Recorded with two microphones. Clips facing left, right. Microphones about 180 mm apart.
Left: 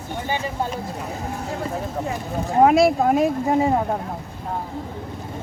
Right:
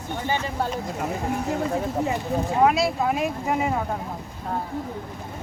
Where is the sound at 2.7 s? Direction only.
50° left (ahead or behind).